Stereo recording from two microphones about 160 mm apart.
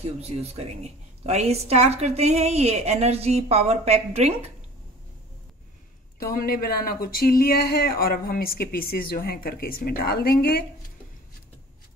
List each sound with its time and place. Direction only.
0.2 s a woman's voice: 40° right (ahead or behind)
6.1 s speech: 65° left (ahead or behind)